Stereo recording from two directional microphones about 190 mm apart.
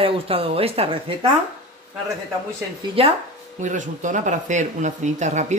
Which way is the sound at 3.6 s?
40° right (ahead or behind).